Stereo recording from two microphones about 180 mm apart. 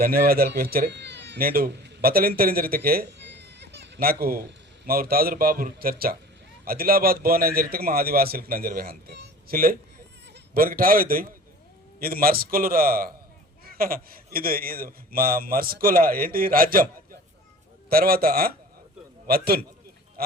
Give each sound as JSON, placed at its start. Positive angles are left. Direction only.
{"t": 0.0, "sound": "a man's voice", "side_deg": -55}